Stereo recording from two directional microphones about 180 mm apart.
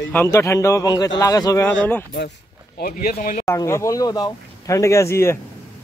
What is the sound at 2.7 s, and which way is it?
Speech, 55° left (ahead or behind).